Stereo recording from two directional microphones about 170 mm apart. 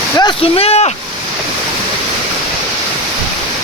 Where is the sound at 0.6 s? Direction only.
35° left (ahead or behind).